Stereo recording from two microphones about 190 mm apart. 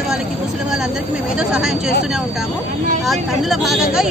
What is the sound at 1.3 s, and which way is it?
Speech, 5° right (ahead or behind).